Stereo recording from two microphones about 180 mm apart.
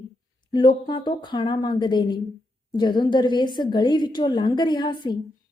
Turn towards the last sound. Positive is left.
turn(degrees=25)  # may be behind; listen again after turning